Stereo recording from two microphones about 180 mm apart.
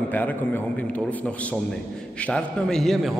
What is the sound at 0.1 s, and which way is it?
A man's voice, 10° left (ahead or behind).